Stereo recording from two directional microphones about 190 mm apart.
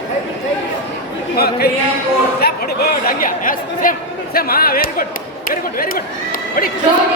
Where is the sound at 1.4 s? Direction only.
55° left (ahead or behind).